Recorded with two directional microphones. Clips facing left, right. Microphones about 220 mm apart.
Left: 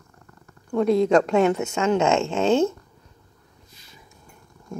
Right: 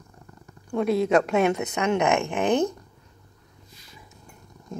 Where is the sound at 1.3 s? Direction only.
20° right (ahead or behind).